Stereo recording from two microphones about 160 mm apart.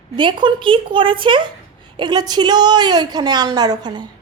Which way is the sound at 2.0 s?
25° right (ahead or behind).